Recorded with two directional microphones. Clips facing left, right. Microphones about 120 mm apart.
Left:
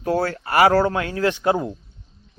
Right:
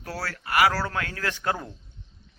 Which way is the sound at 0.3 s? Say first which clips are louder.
Left 5 dB; 30° left (ahead or behind).